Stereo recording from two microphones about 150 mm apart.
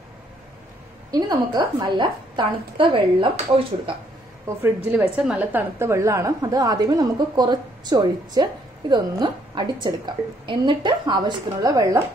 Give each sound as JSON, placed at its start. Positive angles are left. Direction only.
{"t": 1.1, "sound": "a woman's voice", "side_deg": -30}
{"t": 4.8, "sound": "a woman's voice", "side_deg": -10}